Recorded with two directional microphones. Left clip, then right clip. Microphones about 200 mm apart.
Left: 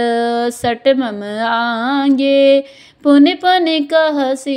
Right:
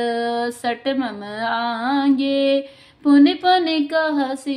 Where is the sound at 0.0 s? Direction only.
35° left (ahead or behind).